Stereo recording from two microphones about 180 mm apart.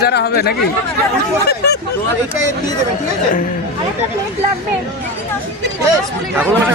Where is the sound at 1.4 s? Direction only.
65° left (ahead or behind).